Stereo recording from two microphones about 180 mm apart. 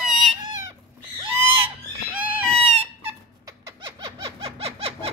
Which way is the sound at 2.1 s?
10° right (ahead or behind).